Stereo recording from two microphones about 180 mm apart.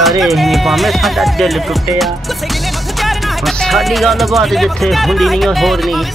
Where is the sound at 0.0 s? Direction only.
Centre (ahead or behind).